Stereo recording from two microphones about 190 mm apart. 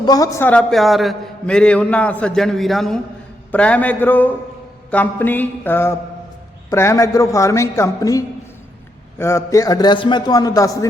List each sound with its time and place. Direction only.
0.0 s a man's voice: 20° left (ahead or behind)